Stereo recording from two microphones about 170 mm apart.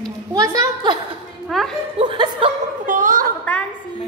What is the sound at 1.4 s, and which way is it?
Speech, centre (ahead or behind).